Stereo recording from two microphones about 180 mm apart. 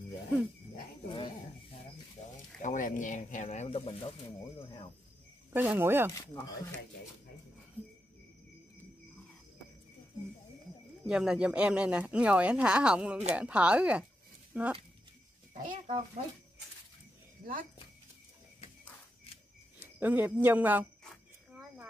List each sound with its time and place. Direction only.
1.0 s dog: 30° left (ahead or behind)
2.6 s speech: 45° left (ahead or behind)
5.5 s speech: 10° right (ahead or behind)
11.1 s speech: 5° right (ahead or behind)
15.5 s speech: 50° right (ahead or behind)
20.0 s speech: 10° right (ahead or behind)
21.0 s a sound: 5° left (ahead or behind)